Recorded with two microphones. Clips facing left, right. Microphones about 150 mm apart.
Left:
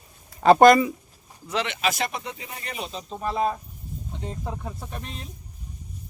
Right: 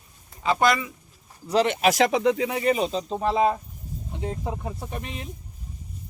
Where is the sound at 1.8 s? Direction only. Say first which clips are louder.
Right 8 dB; 90° right.